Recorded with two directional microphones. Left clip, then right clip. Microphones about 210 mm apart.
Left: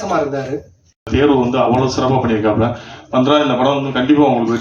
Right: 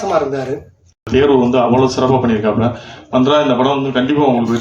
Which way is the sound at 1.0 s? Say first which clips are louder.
Right 2 dB; 50° right (ahead or behind).